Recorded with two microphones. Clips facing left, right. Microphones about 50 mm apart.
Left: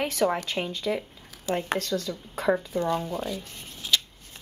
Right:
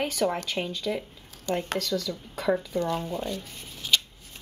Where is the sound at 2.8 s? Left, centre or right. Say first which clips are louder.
Left 2 dB; centre.